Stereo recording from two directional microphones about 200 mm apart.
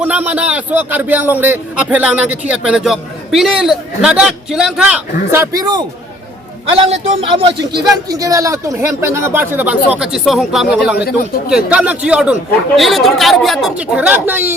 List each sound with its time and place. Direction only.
0.0 s speech: 5° right (ahead or behind)
5.3 s speech: 15° right (ahead or behind)
6.7 s speech: 30° right (ahead or behind)
8.1 s speech: 15° right (ahead or behind)